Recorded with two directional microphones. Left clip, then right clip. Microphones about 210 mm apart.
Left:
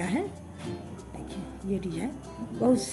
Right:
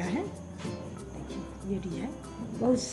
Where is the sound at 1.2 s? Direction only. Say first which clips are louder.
Left 3 dB; 35° left (ahead or behind).